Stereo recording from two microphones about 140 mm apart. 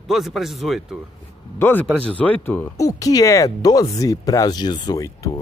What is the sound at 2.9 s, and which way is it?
Speech, 25° left (ahead or behind).